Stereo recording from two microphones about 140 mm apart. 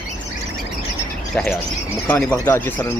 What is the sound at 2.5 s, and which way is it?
Speech, 15° left (ahead or behind).